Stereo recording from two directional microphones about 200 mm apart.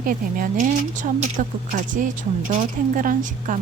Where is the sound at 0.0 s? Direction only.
45° right (ahead or behind).